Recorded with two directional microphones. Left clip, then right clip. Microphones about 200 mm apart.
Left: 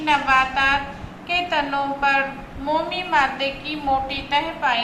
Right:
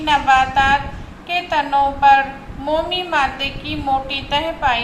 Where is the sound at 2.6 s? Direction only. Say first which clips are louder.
Right 3 dB; 40° right (ahead or behind).